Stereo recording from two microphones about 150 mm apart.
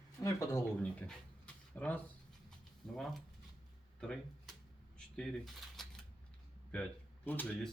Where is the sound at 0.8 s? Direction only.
10° left (ahead or behind).